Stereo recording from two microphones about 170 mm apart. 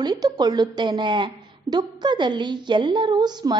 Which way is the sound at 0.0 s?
25° right (ahead or behind).